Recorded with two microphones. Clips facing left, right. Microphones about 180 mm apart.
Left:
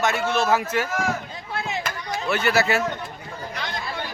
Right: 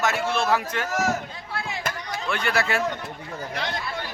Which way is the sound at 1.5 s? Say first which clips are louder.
Left 4 dB; 20° left (ahead or behind).